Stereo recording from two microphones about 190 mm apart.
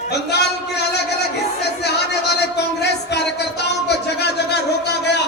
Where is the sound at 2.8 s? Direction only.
60° left (ahead or behind).